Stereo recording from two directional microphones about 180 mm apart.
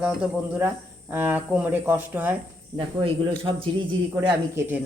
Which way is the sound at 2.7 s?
30° right (ahead or behind).